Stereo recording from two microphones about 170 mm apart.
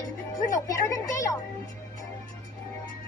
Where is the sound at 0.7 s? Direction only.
20° left (ahead or behind).